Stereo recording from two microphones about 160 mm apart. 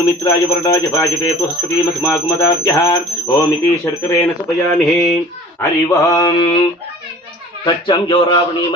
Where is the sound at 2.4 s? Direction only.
20° left (ahead or behind).